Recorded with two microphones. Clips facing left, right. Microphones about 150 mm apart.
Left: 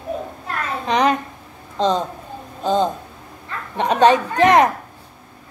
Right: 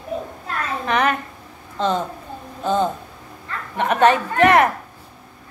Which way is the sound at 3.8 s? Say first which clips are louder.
Left 2 dB; 15° left (ahead or behind).